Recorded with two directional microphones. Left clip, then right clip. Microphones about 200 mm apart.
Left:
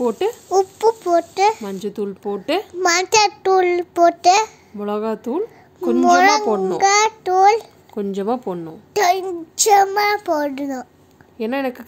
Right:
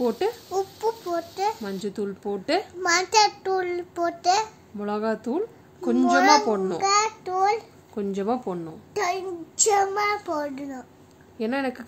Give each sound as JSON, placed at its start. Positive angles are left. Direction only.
{"t": 0.5, "sound": "a sound", "side_deg": 40}
{"t": 1.6, "sound": "speech", "side_deg": 20}
{"t": 2.8, "sound": "a child's voice", "side_deg": 40}
{"t": 4.7, "sound": "a woman's voice", "side_deg": 15}
{"t": 6.1, "sound": "a child's voice", "side_deg": 45}
{"t": 6.5, "sound": "speech", "side_deg": 25}
{"t": 6.8, "sound": "a child's voice", "side_deg": 50}
{"t": 7.9, "sound": "speech", "side_deg": 25}
{"t": 8.9, "sound": "a child's voice", "side_deg": 55}
{"t": 11.3, "sound": "speech", "side_deg": 20}